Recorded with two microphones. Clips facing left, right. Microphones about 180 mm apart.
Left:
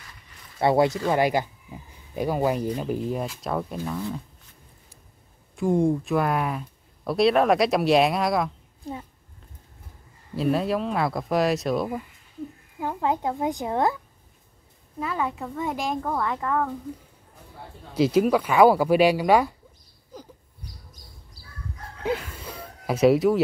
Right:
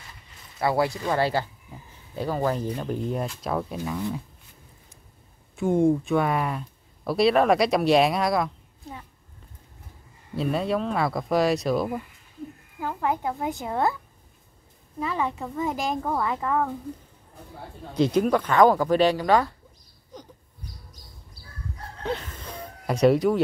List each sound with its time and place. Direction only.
0.6 s speech: 20° left (ahead or behind); by 3.7 s centre (ahead or behind)
5.6 s speech: centre (ahead or behind)
10.3 s speech: centre (ahead or behind)
12.8 s speech: 20° left (ahead or behind)
15.0 s speech: centre (ahead or behind)
17.9 s speech: 5° left (ahead or behind)
22.0 s a sound: 10° left (ahead or behind)